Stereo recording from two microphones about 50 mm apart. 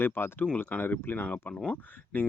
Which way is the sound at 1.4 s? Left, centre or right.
Left.